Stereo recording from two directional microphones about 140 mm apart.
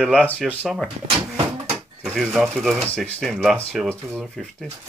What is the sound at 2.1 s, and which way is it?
Speech, centre (ahead or behind).